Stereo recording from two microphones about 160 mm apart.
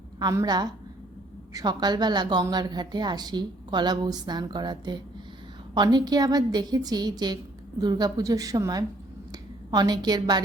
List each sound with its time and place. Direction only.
0.2 s a woman's voice: 25° right (ahead or behind)